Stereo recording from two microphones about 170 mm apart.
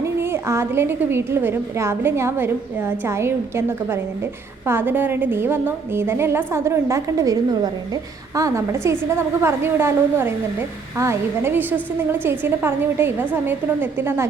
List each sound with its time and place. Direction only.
0.0 s a woman's voice: 15° right (ahead or behind)